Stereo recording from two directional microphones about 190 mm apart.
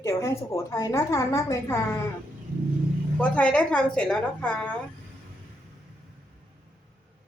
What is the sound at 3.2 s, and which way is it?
A woman's voice, 5° left (ahead or behind).